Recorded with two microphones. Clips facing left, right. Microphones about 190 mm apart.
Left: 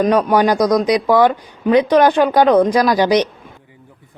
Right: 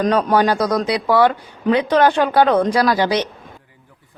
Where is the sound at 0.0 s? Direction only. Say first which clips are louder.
Left 2 dB; 10° left (ahead or behind).